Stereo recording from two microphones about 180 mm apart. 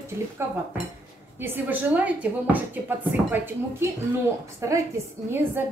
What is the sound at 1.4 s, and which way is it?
Speech, 10° right (ahead or behind).